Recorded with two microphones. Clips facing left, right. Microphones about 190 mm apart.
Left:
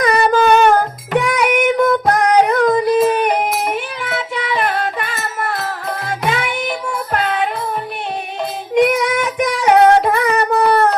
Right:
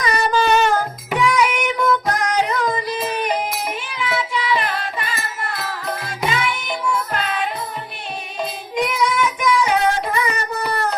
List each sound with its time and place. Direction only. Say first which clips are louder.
0.0 s a sound: left 5 dB; 55° left (ahead or behind)
1.2 s child singing: left 1 dB; 55° left (ahead or behind)
7.1 s music: left 5 dB; 60° left (ahead or behind)
8.7 s child singing: left 7 dB; 60° left (ahead or behind)